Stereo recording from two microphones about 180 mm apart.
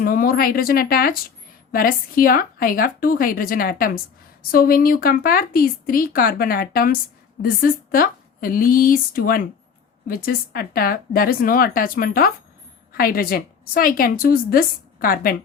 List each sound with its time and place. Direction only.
0.0 s a woman's voice: 50° left (ahead or behind)